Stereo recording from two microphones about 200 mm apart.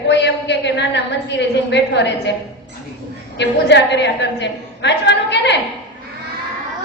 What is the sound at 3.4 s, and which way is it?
A woman's voice, 60° left (ahead or behind).